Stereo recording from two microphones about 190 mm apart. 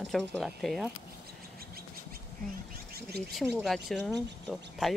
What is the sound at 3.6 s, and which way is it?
Speech, centre (ahead or behind).